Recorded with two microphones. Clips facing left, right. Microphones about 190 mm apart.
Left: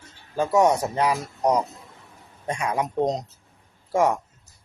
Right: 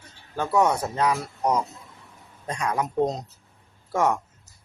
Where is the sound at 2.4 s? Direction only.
10° left (ahead or behind).